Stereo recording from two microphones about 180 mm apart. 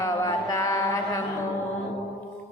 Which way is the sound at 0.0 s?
15° left (ahead or behind).